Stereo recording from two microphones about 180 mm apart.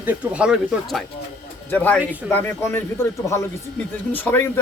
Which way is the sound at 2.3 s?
10° left (ahead or behind).